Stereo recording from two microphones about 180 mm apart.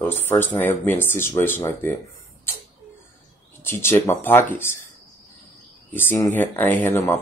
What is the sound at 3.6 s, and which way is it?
Speech, 15° left (ahead or behind).